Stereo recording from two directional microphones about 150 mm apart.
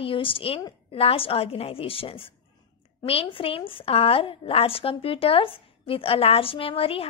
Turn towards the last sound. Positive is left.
turn(degrees=40)  # may be behind; listen again after turning